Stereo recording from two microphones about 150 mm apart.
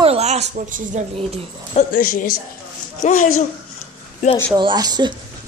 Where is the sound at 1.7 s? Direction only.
65° left (ahead or behind).